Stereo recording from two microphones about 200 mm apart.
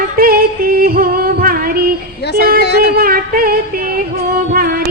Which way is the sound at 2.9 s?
50° right (ahead or behind).